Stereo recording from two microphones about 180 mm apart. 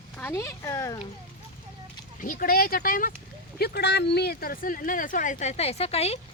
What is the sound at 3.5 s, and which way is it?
Speech, 60° left (ahead or behind).